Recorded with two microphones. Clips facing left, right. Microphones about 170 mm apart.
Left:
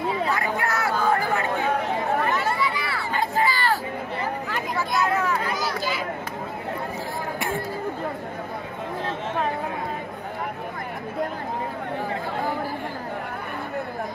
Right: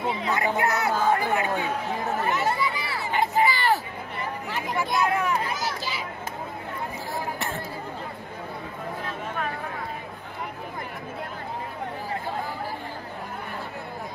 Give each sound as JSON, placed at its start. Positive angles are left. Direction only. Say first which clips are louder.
{"t": 0.3, "sound": "chatter", "louder": "right 1 dB", "side_deg": -20}
{"t": 2.3, "sound": "a sound", "louder": "left 1 dB", "side_deg": -20}
{"t": 7.3, "sound": "chatter", "louder": "left 4 dB", "side_deg": 10}